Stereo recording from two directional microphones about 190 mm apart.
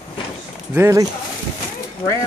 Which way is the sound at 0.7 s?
15° right (ahead or behind).